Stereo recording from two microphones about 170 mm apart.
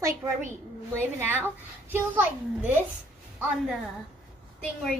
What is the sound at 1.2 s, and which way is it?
A woman's voice, 10° right (ahead or behind).